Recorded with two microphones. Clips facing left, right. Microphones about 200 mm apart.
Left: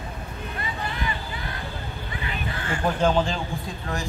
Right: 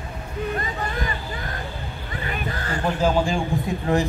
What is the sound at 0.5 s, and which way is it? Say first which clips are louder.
Hubbub: right 4 dB; 45° right (ahead or behind).